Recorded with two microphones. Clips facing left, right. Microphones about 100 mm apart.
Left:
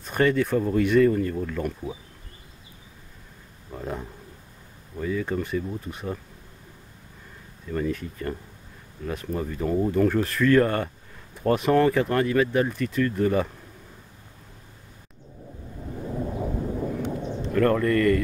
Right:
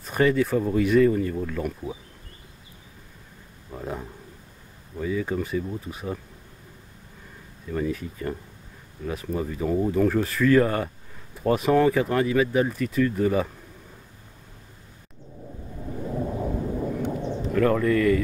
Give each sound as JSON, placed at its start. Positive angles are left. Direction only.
{"t": 0.0, "sound": "speech", "side_deg": 0}
{"t": 3.7, "sound": "a sound", "side_deg": 0}
{"t": 4.9, "sound": "speech", "side_deg": -5}
{"t": 7.7, "sound": "speech", "side_deg": -5}
{"t": 16.0, "sound": "a sound", "side_deg": -10}
{"t": 17.4, "sound": "speech", "side_deg": -5}